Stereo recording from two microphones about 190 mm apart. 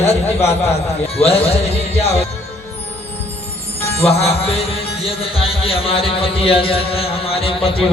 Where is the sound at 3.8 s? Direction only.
30° left (ahead or behind).